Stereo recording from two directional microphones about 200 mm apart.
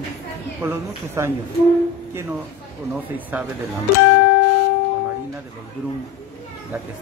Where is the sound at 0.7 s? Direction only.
10° right (ahead or behind).